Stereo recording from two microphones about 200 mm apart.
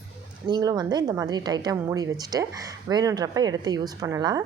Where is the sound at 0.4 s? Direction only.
20° right (ahead or behind).